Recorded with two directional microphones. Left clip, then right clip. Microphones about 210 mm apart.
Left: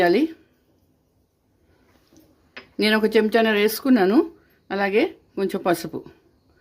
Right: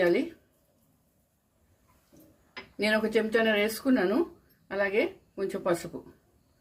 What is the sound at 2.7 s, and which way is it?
Speech, 55° left (ahead or behind).